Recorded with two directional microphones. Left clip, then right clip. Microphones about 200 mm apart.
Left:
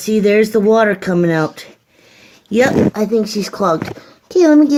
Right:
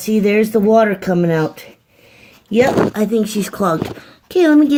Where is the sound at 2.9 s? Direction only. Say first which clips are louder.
Left 1 dB; 15° right (ahead or behind).